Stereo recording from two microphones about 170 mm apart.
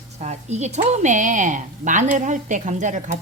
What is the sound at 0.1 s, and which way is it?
A woman's voice, 40° right (ahead or behind).